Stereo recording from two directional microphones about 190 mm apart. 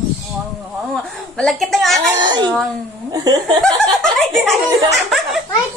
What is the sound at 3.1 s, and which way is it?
Laughter, 20° right (ahead or behind).